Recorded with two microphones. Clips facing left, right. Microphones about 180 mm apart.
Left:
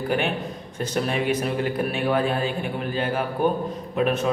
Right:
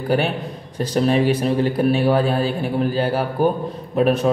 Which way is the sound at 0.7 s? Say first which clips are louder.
Right 7 dB; 35° right (ahead or behind).